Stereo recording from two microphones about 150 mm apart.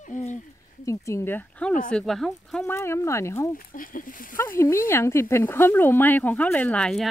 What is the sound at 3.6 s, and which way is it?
Speech, 70° left (ahead or behind).